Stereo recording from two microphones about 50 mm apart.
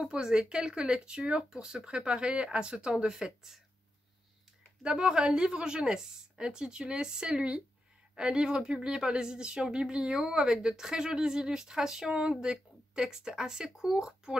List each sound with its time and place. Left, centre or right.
0.0 s a woman's voice: centre
4.8 s a woman's voice: centre